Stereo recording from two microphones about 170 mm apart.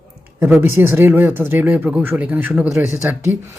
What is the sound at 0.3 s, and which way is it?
Speech, 15° right (ahead or behind).